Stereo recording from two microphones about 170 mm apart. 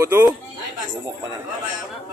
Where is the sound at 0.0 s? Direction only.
15° right (ahead or behind).